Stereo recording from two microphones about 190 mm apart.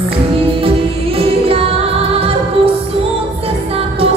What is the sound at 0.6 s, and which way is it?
Music, 30° right (ahead or behind).